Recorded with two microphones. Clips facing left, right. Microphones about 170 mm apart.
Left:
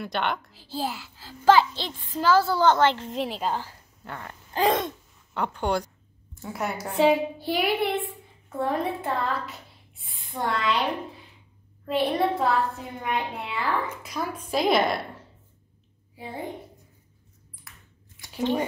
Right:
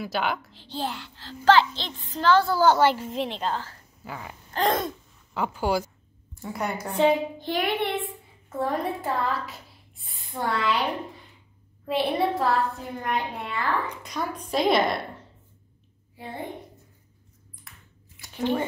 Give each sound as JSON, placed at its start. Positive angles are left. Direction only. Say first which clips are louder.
{"t": 0.0, "sound": "a child's voice", "louder": "right 1 dB", "side_deg": 0}
{"t": 4.0, "sound": "a child's voice", "louder": "right 1 dB", "side_deg": -5}
{"t": 17.6, "sound": "squish", "louder": "even", "side_deg": 0}